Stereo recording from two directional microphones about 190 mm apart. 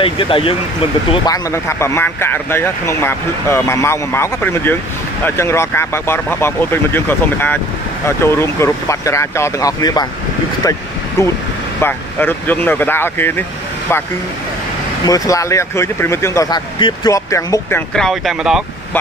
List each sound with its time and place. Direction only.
0.0 s speech: 30° left (ahead or behind); by 14.0 s 10° left (ahead or behind)
15.0 s speech: 15° left (ahead or behind); by 18.6 s centre (ahead or behind)